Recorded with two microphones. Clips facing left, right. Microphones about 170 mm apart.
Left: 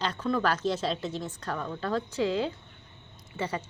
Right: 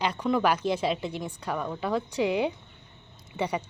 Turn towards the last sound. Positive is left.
turn(degrees=-15)  # may be behind; listen again after turning